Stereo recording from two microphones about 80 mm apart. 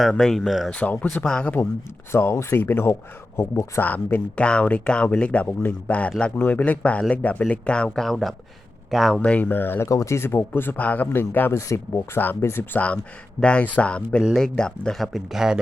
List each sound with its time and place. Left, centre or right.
0.0 s speech: centre
0.7 s speech: centre
2.1 s a man's voice: left
3.8 s speech: left; by 9.1 s centre
9.1 s a man's voice: centre
9.8 s a man's voice: left
12.7 s speech: centre